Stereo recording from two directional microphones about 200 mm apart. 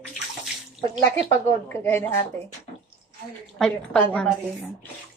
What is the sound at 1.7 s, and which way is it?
Speech, 10° left (ahead or behind).